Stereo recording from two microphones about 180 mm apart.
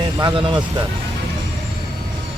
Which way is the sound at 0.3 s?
30° right (ahead or behind).